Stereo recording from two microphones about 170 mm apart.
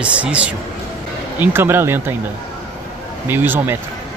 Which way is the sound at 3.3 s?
10° right (ahead or behind).